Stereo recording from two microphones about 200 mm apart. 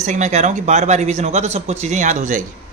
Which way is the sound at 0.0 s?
35° right (ahead or behind).